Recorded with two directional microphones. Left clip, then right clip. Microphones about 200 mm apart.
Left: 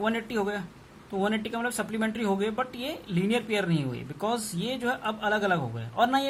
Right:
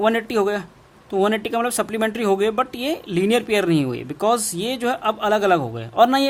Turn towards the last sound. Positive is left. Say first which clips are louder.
# right 9 dB
turn(degrees=-50)  # may be behind; listen again after turning